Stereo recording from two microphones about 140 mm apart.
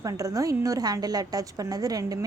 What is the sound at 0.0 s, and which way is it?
A woman's voice, 25° right (ahead or behind).